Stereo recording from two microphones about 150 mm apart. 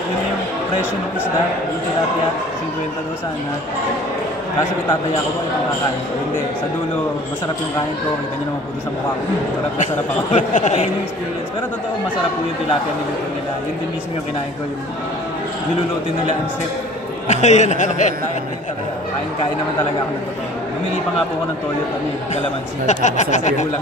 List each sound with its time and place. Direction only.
10.3 s a man's voice: 55° left (ahead or behind)
17.3 s a man's voice: 50° left (ahead or behind)
22.8 s a man's voice: 50° left (ahead or behind)